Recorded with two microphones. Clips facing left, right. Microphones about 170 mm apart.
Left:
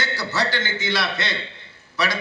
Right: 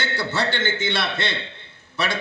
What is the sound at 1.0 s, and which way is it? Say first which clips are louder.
Speech: even; 55° right (ahead or behind).